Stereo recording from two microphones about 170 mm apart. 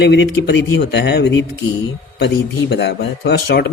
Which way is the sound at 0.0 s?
85° left.